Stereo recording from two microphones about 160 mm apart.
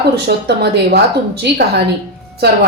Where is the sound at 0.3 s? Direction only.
90° right.